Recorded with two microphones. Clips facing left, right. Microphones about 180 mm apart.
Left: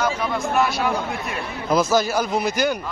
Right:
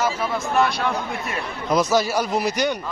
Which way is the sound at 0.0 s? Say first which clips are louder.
Left 1 dB; centre (ahead or behind).